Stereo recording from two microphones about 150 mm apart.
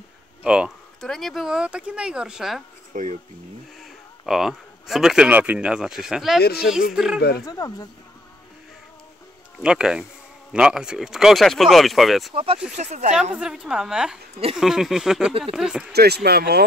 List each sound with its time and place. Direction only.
0.4 s speech: 5° right (ahead or behind)
2.9 s speech: 55° right (ahead or behind)
4.3 s speech: centre (ahead or behind)
6.4 s speech: 90° left
6.9 s speech: 5° right (ahead or behind)
7.2 s speech: 90° left
7.4 s speech: 25° left (ahead or behind)
9.6 s speech: 5° right (ahead or behind)
12.7 s speech: 50° right (ahead or behind)
13.4 s speech: 5° right (ahead or behind)
15.9 s speech: 90° right